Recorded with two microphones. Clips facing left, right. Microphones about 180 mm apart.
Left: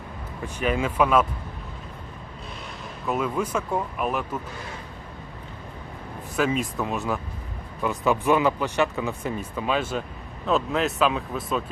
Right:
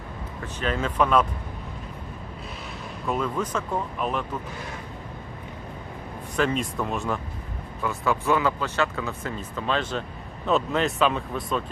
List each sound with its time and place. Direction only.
0.4 s speech: 10° left (ahead or behind)
3.1 s speech: 10° left (ahead or behind)
6.3 s speech: 5° left (ahead or behind)
7.8 s speech: 20° left (ahead or behind); by 11.6 s centre (ahead or behind)